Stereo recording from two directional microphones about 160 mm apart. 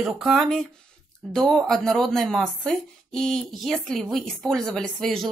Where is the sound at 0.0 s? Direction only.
Centre (ahead or behind).